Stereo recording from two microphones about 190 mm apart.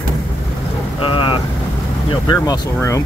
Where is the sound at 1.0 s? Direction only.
25° left (ahead or behind).